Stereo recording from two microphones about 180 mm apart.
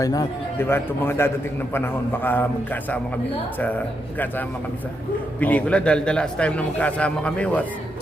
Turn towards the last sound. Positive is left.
turn(degrees=5)  # may be behind; listen again after turning